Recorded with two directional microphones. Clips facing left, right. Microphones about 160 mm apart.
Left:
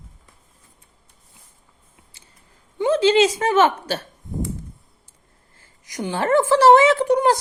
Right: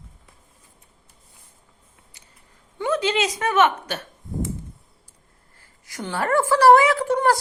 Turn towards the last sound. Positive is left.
turn(degrees=15)  # may be behind; listen again after turning